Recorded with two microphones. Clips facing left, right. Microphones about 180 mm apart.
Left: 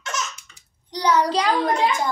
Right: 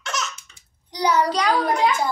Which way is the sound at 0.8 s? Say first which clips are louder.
Even; 10° right (ahead or behind).